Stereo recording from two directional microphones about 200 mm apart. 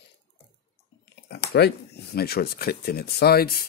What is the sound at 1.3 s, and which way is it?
Speech, 55° left (ahead or behind).